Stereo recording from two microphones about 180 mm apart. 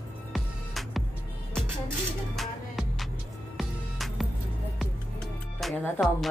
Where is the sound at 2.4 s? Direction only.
Centre (ahead or behind).